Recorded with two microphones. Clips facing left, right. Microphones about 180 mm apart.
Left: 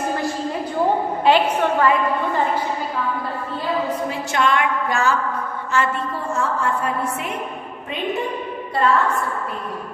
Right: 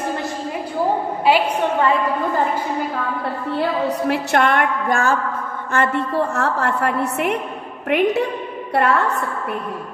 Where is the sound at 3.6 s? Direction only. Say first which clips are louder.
Right 3 dB; 70° right (ahead or behind).